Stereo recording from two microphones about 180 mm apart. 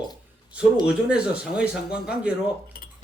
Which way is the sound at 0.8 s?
5° right (ahead or behind).